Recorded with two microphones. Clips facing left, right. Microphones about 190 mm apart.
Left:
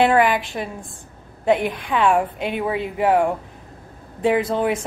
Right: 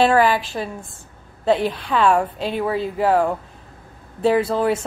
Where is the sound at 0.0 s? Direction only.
20° left (ahead or behind).